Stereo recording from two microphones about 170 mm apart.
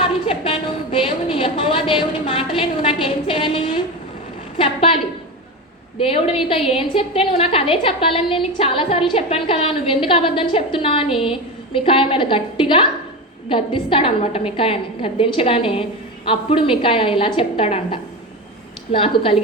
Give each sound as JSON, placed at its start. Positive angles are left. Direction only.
{"t": 0.0, "sound": "a woman's voice", "side_deg": 30}
{"t": 6.0, "sound": "a woman's voice", "side_deg": 35}